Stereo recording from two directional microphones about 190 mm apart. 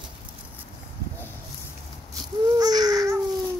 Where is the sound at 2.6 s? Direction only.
20° right (ahead or behind).